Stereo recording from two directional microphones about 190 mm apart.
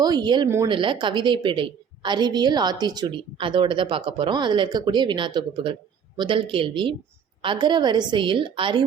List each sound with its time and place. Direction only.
0.0 s a woman's voice: 20° right (ahead or behind)